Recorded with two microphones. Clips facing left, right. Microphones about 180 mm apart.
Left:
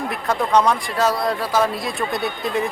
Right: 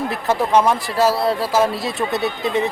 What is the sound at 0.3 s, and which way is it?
Speech, 25° right (ahead or behind).